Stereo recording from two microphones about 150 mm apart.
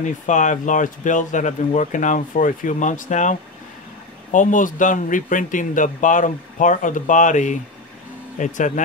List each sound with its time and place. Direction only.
0.0 s speech: 55° left (ahead or behind)